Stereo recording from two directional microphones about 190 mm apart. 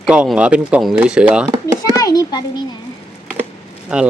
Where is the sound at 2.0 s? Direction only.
20° left (ahead or behind).